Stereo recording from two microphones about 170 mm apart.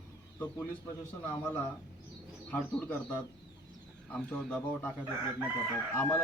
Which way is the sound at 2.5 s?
10° left (ahead or behind).